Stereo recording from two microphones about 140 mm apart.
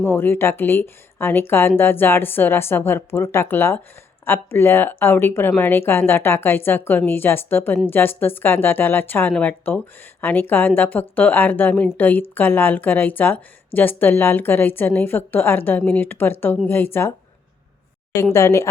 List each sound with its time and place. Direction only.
0.0 s speech: 15° left (ahead or behind)
18.3 s a woman's voice: 20° left (ahead or behind)